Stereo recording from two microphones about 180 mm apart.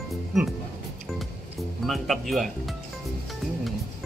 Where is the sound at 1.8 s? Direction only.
Centre (ahead or behind).